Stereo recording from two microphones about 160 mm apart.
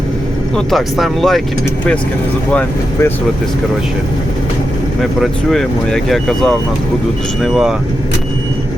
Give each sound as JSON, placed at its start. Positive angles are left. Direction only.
{"t": 0.5, "sound": "speech", "side_deg": 0}
{"t": 2.5, "sound": "speech", "side_deg": 10}
{"t": 5.2, "sound": "speech", "side_deg": 0}